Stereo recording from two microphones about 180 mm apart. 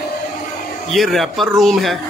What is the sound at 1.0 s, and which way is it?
Speech, centre (ahead or behind).